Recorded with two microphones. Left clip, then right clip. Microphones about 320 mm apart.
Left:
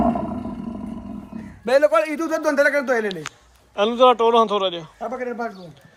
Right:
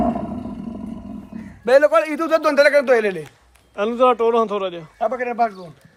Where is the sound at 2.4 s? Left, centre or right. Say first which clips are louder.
Right 2 dB; right.